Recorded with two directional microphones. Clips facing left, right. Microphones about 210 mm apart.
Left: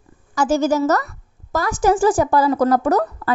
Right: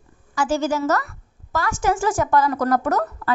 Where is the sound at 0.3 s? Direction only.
40° left (ahead or behind).